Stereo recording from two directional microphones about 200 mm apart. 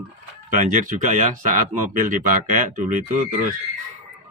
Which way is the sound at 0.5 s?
40° right (ahead or behind).